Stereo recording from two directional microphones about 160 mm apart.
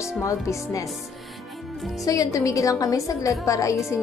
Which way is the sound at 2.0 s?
20° left (ahead or behind).